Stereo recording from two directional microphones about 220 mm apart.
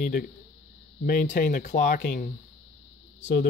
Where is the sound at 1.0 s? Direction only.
35° left (ahead or behind).